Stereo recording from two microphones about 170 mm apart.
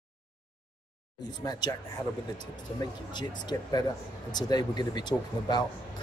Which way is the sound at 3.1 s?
25° left (ahead or behind).